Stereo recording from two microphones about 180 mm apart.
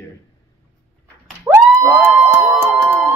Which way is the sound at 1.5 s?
15° right (ahead or behind).